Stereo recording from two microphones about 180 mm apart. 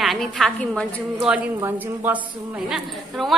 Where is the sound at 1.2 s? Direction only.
5° right (ahead or behind).